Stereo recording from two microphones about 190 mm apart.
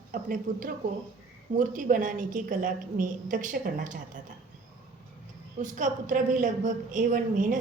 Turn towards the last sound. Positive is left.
turn(degrees=-45)  # may be behind; listen again after turning